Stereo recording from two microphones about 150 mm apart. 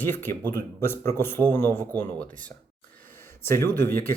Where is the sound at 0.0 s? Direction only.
15° left (ahead or behind).